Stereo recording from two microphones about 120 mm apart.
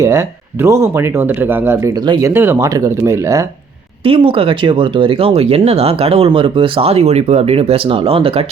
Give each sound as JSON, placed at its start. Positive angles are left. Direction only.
{"t": 0.0, "sound": "speech", "side_deg": -25}
{"t": 2.6, "sound": "speech", "side_deg": -30}
{"t": 4.0, "sound": "speech", "side_deg": -50}